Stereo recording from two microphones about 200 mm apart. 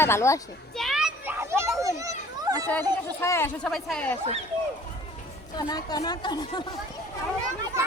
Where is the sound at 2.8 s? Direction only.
20° right (ahead or behind).